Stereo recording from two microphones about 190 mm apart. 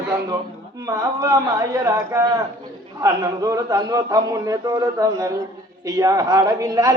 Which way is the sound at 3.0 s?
15° right (ahead or behind).